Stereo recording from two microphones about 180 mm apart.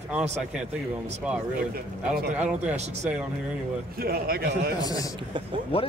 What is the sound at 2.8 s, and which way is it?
Speech, 40° right (ahead or behind).